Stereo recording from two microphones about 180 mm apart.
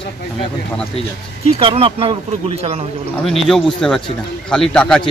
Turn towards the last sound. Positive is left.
turn(degrees=5)  # may be behind; listen again after turning